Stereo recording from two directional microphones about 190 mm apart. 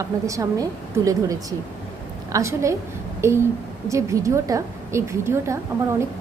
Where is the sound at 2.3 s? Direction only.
15° right (ahead or behind).